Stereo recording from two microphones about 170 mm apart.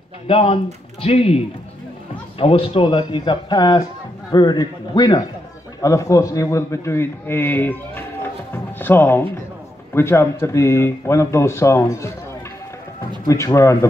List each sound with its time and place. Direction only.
0.3 s a man's voice: 35° left (ahead or behind); by 12.1 s 15° left (ahead or behind)
13.3 s a man's voice: 20° left (ahead or behind)